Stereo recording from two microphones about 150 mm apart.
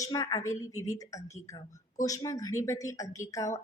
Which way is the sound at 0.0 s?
25° left (ahead or behind).